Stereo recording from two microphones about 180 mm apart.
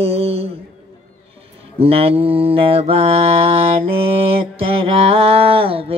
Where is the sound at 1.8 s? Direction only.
30° right (ahead or behind).